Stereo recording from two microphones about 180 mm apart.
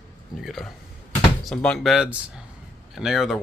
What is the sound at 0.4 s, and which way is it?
Speech, centre (ahead or behind).